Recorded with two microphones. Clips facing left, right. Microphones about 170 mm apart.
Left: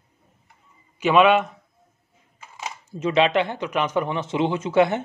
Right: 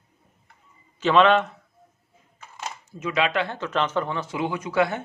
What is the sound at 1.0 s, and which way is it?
Speech, 10° left (ahead or behind).